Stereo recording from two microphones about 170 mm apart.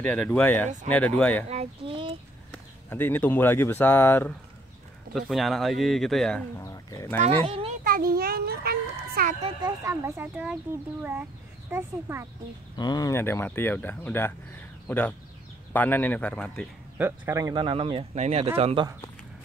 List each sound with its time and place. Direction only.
0.0 s speech: 5° left (ahead or behind)
1.5 s speech: 35° right (ahead or behind)
2.5 s speech: 10° left (ahead or behind)
5.1 s speech: centre (ahead or behind)
6.6 s speech: 20° left (ahead or behind)
7.2 s speech: 35° right (ahead or behind)
7.8 s a sound: 60° right (ahead or behind)
9.6 s speech: 20° right (ahead or behind)
12.7 s speech: 25° left (ahead or behind); by 16.6 s 10° left (ahead or behind)
17.0 s speech: 15° right (ahead or behind); by 18.9 s 35° right (ahead or behind)